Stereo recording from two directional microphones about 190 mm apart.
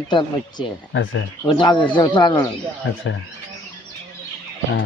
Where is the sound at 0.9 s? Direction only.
75° left (ahead or behind).